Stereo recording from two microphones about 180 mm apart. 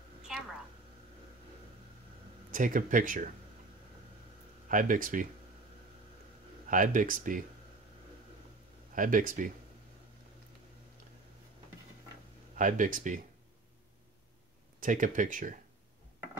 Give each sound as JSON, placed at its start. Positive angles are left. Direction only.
{"t": 0.3, "sound": "a sound", "side_deg": 0}
{"t": 2.5, "sound": "speech", "side_deg": -50}
{"t": 4.6, "sound": "speech", "side_deg": -45}
{"t": 6.7, "sound": "speech", "side_deg": -45}
{"t": 8.9, "sound": "speech", "side_deg": -50}
{"t": 12.5, "sound": "speech", "side_deg": -45}
{"t": 14.8, "sound": "speech", "side_deg": -45}